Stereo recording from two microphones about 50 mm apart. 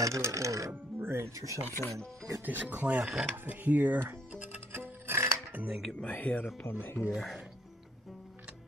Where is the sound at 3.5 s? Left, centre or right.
Right.